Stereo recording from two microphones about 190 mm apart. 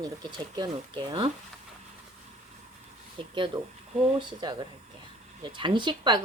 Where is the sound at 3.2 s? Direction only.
25° right (ahead or behind).